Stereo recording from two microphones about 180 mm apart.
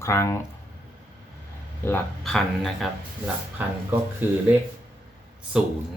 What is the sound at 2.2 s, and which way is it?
Speech, centre (ahead or behind).